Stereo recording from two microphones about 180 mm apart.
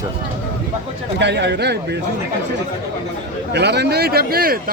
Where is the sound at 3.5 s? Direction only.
70° right (ahead or behind).